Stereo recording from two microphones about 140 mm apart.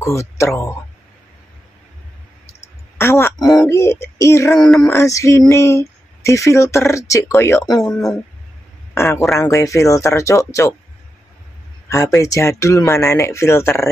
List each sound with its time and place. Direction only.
0.0 s speech: 20° left (ahead or behind)
3.0 s a sound: 20° left (ahead or behind)
3.6 s speech: 20° left (ahead or behind)
9.4 s speech: 25° left (ahead or behind)
11.9 s speech: 20° left (ahead or behind)